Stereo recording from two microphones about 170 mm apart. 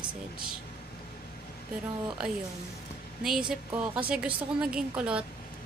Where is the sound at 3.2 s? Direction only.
5° right (ahead or behind).